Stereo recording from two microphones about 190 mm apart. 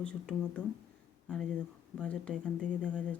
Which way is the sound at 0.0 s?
5° left (ahead or behind).